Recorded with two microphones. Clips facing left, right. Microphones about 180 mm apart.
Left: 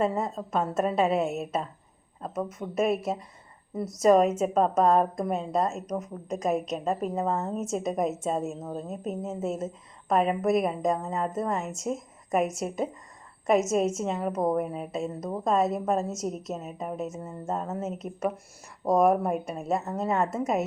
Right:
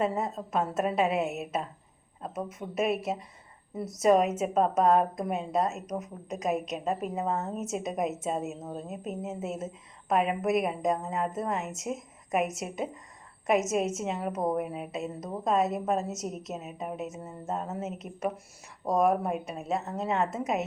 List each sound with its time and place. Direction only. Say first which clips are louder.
0.0 s a woman's voice: left 2 dB; 5° right (ahead or behind)
13.7 s a woman's voice: left 3 dB; 5° right (ahead or behind)
20.3 s a woman's voice: left 3 dB; 20° right (ahead or behind)